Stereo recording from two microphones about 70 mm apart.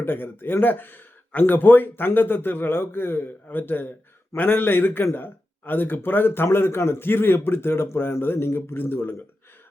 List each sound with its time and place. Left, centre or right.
0.0 s speech: left